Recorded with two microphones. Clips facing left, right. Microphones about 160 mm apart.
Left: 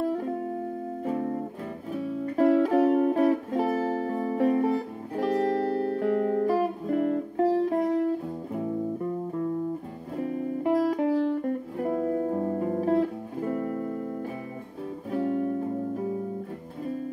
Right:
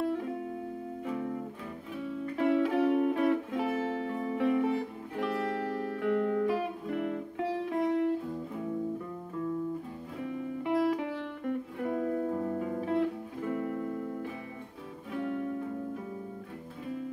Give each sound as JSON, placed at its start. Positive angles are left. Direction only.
{"t": 0.0, "sound": "music", "side_deg": 40}
{"t": 9.3, "sound": "music", "side_deg": 40}